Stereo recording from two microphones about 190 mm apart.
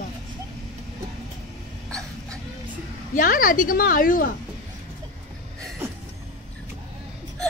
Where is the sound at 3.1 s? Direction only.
45° left (ahead or behind).